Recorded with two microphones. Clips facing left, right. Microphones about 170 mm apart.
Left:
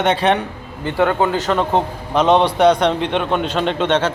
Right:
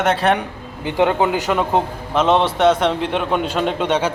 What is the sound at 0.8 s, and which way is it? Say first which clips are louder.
A man's voice: even; 20° right (ahead or behind).